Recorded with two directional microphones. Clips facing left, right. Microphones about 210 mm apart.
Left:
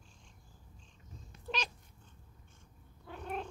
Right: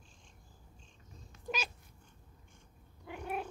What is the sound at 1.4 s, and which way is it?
Cat, 5° right (ahead or behind).